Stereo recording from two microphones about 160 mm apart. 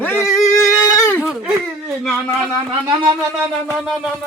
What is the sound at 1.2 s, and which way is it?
Speech, 5° right (ahead or behind).